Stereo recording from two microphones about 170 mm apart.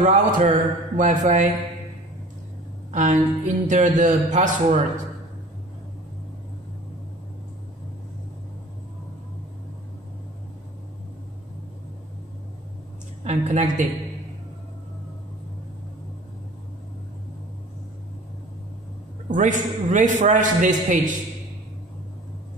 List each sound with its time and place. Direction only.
0.0 s a man's voice: 45° right (ahead or behind)
2.9 s a man's voice: 45° right (ahead or behind)
13.2 s a woman's voice: 40° right (ahead or behind)
19.3 s a man's voice: 50° right (ahead or behind)